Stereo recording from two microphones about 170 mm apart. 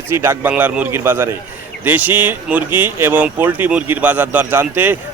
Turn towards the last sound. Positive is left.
turn(degrees=-10)  # may be behind; listen again after turning